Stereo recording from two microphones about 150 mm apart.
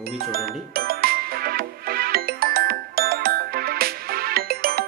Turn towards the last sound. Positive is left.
turn(degrees=-85)